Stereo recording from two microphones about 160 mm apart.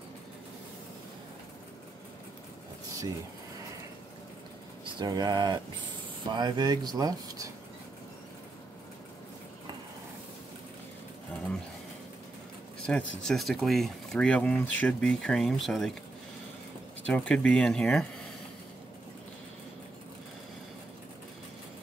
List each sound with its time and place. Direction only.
4.8 s speech: 25° right (ahead or behind)
12.8 s speech: 5° left (ahead or behind)
17.0 s speech: 5° left (ahead or behind)